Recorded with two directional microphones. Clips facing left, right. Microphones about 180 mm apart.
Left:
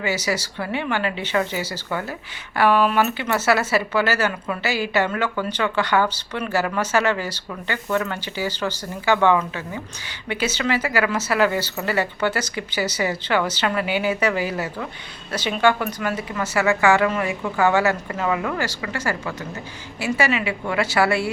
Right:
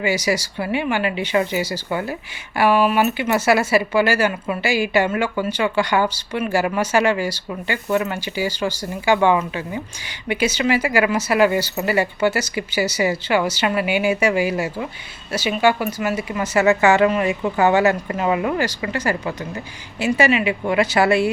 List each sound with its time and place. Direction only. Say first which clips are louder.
0.0 s speech: right 4 dB; 15° right (ahead or behind)